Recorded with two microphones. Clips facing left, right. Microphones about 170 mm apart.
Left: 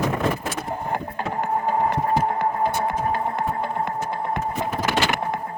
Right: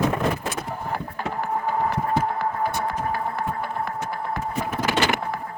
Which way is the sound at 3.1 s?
20° left (ahead or behind).